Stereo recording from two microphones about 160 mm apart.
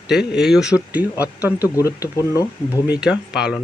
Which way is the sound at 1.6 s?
20° left (ahead or behind).